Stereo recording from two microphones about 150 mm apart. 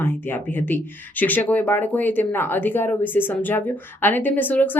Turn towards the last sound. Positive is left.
turn(degrees=10)  # may be behind; listen again after turning